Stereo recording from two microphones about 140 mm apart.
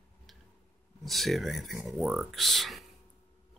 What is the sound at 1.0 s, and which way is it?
Speech, centre (ahead or behind).